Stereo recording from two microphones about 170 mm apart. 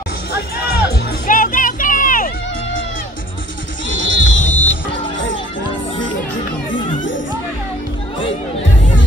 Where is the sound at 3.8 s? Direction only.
90° left.